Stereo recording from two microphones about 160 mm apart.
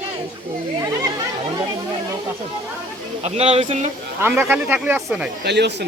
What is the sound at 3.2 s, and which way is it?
Speech, 40° right (ahead or behind).